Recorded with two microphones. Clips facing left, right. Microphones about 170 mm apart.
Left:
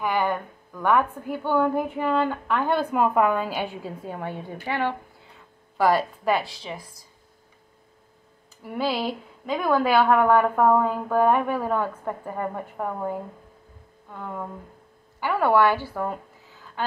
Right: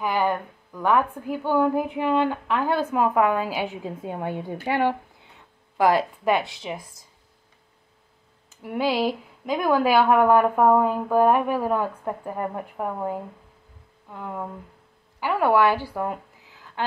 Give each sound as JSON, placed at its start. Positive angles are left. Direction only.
{"t": 0.0, "sound": "a sound", "side_deg": -10}
{"t": 1.3, "sound": "a woman's voice", "side_deg": -10}
{"t": 3.8, "sound": "a woman's voice", "side_deg": -20}
{"t": 8.6, "sound": "a woman's voice", "side_deg": -10}